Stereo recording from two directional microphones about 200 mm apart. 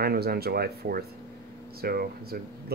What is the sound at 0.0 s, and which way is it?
Speech, 50° right (ahead or behind).